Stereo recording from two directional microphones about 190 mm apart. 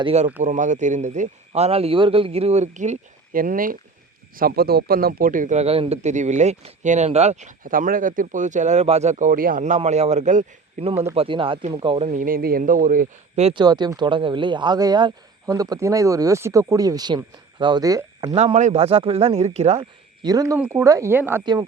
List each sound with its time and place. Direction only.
0.0 s speech: 35° right (ahead or behind)
12.2 s speech: 50° right (ahead or behind); by 18.3 s 20° right (ahead or behind)
18.3 s speech: 30° right (ahead or behind)
20.2 s speech: 20° right (ahead or behind)